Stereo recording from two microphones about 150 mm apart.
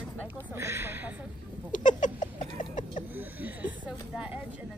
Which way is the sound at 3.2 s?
10° right (ahead or behind).